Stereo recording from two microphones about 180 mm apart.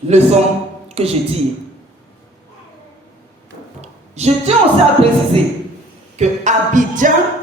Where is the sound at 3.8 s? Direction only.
40° right (ahead or behind).